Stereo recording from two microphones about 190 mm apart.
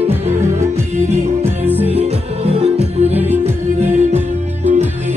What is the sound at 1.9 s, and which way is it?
Music, 35° right (ahead or behind).